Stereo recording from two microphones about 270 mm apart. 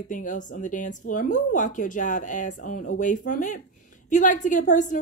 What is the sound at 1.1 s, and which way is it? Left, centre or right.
A woman's voice, left.